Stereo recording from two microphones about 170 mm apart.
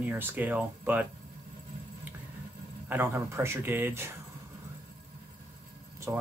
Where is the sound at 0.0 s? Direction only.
10° right (ahead or behind).